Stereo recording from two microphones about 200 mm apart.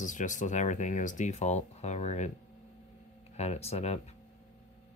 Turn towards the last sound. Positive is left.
turn(degrees=30)  # may be behind; listen again after turning